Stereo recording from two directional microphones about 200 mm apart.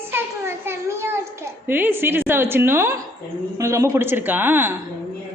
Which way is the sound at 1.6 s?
10° right (ahead or behind).